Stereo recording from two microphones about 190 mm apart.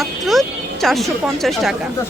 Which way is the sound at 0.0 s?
Centre (ahead or behind).